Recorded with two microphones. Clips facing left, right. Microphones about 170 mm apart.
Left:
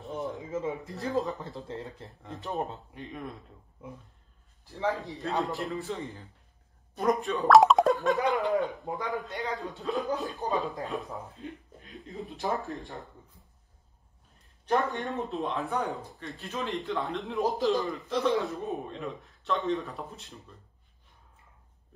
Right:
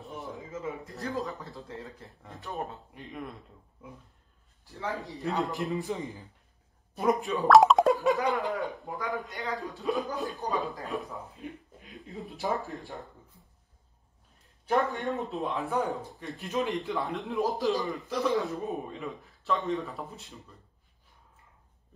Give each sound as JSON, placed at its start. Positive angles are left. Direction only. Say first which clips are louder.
{"t": 0.0, "sound": "a sound", "louder": "left 5 dB", "side_deg": 0}
{"t": 0.5, "sound": "a man's voice", "louder": "left 4 dB", "side_deg": 20}
{"t": 2.9, "sound": "a man's voice", "louder": "left 1 dB", "side_deg": 0}
{"t": 4.6, "sound": "a man's voice", "louder": "left 4 dB", "side_deg": 20}
{"t": 5.4, "sound": "speech", "louder": "right 1 dB", "side_deg": -20}
{"t": 7.0, "sound": "speech", "louder": "even", "side_deg": 0}
{"t": 8.2, "sound": "a man's voice", "louder": "left 3 dB", "side_deg": 20}
{"t": 9.3, "sound": "a man's voice", "louder": "left 1 dB", "side_deg": 0}
{"t": 11.2, "sound": "a sound", "louder": "even", "side_deg": -15}
{"t": 11.9, "sound": "a man's voice", "louder": "left 1 dB", "side_deg": 0}
{"t": 14.7, "sound": "a man's voice", "louder": "right 1 dB", "side_deg": 0}
{"t": 16.3, "sound": "speech", "louder": "right 5 dB", "side_deg": -15}
{"t": 16.9, "sound": "a man's voice", "louder": "even", "side_deg": 0}